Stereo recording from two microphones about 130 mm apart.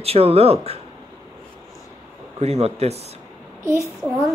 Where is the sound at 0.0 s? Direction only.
50° right (ahead or behind).